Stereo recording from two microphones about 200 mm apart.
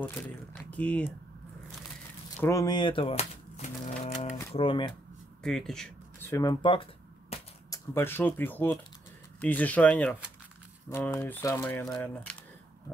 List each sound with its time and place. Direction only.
0.0 s speech: 10° left (ahead or behind)
2.4 s speech: 15° left (ahead or behind); by 4.4 s 35° left (ahead or behind)
4.6 s speech: 25° left (ahead or behind)
5.4 s a sound: centre (ahead or behind); by 7.8 s 25° left (ahead or behind)
7.9 s speech: 10° left (ahead or behind)